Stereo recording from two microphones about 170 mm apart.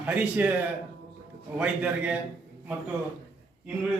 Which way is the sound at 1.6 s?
5° right (ahead or behind).